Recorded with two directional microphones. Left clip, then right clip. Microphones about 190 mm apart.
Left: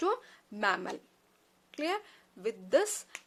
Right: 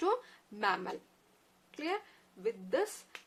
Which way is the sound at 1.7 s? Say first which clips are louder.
Left 3 dB; 50° left (ahead or behind).